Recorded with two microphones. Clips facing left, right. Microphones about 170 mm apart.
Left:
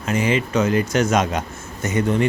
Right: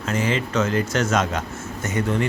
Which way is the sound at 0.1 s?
15° left (ahead or behind).